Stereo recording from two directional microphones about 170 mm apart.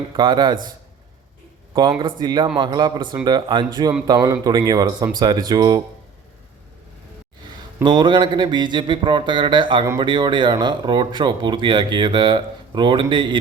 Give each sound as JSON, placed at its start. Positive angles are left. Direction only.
{"t": 0.2, "sound": "speech", "side_deg": -25}
{"t": 2.0, "sound": "speech", "side_deg": -25}
{"t": 7.9, "sound": "speech", "side_deg": -25}